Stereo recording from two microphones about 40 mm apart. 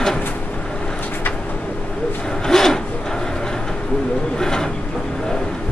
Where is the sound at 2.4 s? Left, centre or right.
Centre.